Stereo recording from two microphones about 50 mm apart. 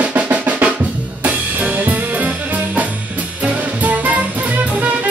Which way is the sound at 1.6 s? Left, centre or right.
Right.